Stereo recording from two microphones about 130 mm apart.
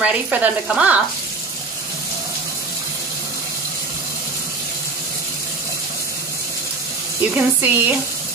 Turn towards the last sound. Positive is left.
turn(degrees=-15)  # may be behind; listen again after turning